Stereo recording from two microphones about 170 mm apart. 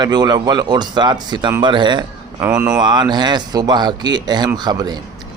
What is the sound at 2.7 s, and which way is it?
Speech, 25° right (ahead or behind).